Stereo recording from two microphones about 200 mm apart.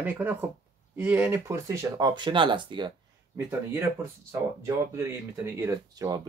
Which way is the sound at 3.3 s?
15° right (ahead or behind).